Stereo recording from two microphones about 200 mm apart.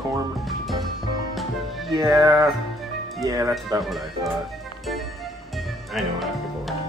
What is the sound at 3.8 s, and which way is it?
Speech, centre (ahead or behind).